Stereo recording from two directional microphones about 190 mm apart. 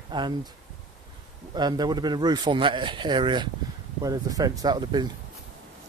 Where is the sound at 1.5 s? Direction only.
20° right (ahead or behind).